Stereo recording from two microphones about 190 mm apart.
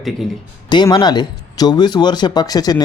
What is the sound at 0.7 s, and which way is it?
Speech, 20° left (ahead or behind).